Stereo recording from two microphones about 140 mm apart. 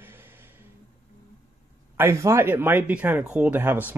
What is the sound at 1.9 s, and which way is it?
Speech, 20° right (ahead or behind).